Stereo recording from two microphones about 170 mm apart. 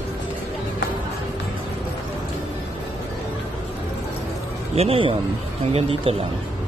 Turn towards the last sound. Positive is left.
turn(degrees=-35)  # may be behind; listen again after turning